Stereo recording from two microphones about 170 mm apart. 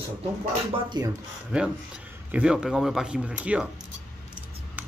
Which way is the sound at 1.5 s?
5° right (ahead or behind).